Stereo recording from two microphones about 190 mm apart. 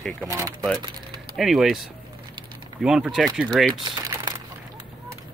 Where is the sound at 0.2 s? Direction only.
15° right (ahead or behind).